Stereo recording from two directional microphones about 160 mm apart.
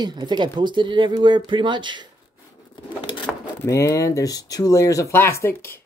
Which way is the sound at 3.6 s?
15° left (ahead or behind).